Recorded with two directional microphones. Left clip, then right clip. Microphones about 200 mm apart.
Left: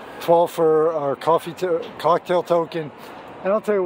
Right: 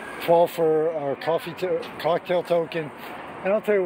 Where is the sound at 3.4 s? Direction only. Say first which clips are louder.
Left 2 dB; 30° left (ahead or behind).